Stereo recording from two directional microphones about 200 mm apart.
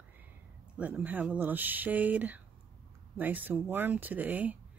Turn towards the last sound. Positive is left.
turn(degrees=-10)  # may be behind; listen again after turning